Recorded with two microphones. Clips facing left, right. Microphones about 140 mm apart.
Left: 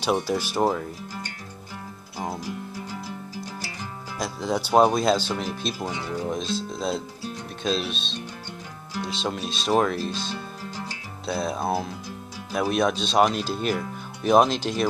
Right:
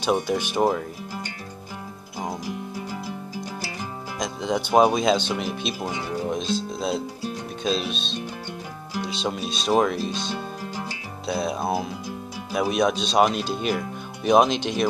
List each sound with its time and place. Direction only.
0.6 s speech: 5° right (ahead or behind)
2.1 s music: 15° right (ahead or behind)
4.2 s speech: 5° left (ahead or behind)
4.7 s speech: 5° right (ahead or behind)
5.3 s speech: 10° right (ahead or behind)
6.3 s speech: centre (ahead or behind)
10.9 s music: centre (ahead or behind)
12.5 s speech: 5° right (ahead or behind)